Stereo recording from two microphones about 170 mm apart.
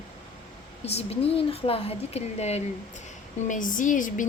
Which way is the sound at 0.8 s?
40° left (ahead or behind).